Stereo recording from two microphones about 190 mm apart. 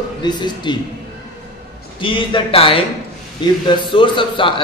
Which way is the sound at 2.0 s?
25° left (ahead or behind).